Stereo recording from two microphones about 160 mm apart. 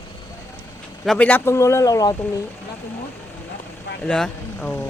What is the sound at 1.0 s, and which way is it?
Speech, 5° left (ahead or behind).